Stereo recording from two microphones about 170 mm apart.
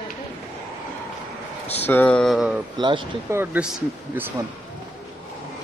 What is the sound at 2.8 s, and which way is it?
Speech, 30° right (ahead or behind).